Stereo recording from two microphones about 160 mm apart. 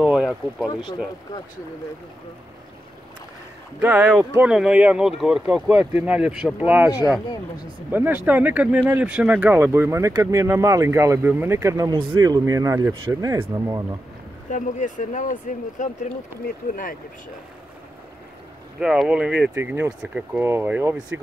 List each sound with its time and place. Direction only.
0.0 s speech: 5° right (ahead or behind)
3.8 s speech: 5° right (ahead or behind)
14.5 s speech: 50° left (ahead or behind)
18.8 s speech: 5° right (ahead or behind)